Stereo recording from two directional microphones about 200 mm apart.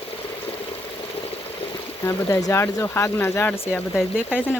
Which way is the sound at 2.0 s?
15° left (ahead or behind).